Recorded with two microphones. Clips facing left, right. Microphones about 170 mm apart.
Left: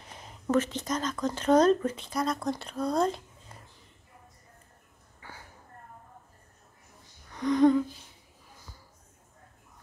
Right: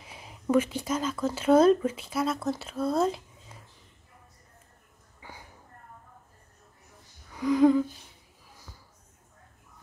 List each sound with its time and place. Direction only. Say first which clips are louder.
0.0 s speech: right 2 dB; 5° right (ahead or behind)
5.2 s a sound: right 1 dB; 15° right (ahead or behind)
7.3 s humming: right 1 dB; 5° right (ahead or behind)